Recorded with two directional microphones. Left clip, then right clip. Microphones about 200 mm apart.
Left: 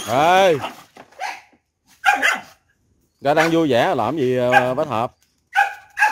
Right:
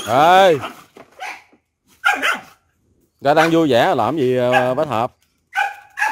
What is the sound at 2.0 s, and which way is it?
Dog, 10° left (ahead or behind).